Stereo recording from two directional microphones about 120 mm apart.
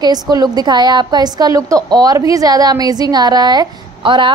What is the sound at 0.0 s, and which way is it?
A woman's voice, 35° right (ahead or behind).